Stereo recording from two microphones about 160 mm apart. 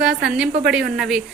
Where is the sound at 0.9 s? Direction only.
5° right (ahead or behind).